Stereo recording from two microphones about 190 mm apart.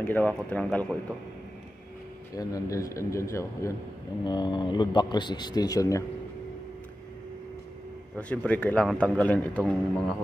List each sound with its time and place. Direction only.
0.0 s a man's voice: 10° left (ahead or behind)
2.3 s a man's voice: 15° left (ahead or behind)
8.2 s a man's voice: 5° left (ahead or behind)